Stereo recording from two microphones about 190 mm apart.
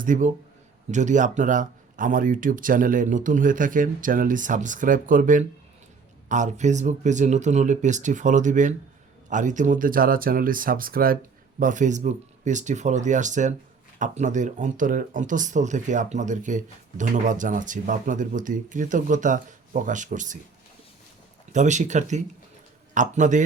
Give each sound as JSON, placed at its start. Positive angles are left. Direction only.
{"t": 0.0, "sound": "speech", "side_deg": -40}
{"t": 21.5, "sound": "speech", "side_deg": -40}